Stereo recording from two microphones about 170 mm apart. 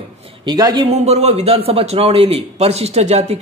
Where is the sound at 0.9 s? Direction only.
40° right (ahead or behind).